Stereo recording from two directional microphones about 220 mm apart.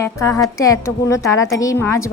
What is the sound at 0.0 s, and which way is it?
Speech, 15° left (ahead or behind).